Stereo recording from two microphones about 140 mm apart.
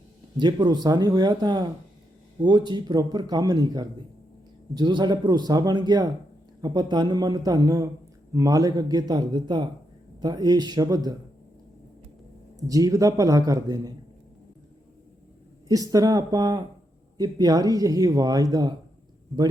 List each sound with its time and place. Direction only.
0.3 s speech: 30° right (ahead or behind)
12.6 s speech: 25° right (ahead or behind)
15.7 s speech: 25° right (ahead or behind)